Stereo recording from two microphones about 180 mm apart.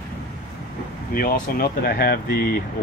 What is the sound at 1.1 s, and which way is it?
Speech, 55° left (ahead or behind).